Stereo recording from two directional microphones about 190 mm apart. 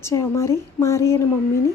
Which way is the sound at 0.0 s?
15° left (ahead or behind).